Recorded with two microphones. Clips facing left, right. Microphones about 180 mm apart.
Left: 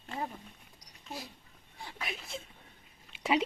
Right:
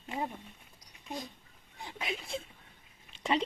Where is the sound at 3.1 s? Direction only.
5° left (ahead or behind).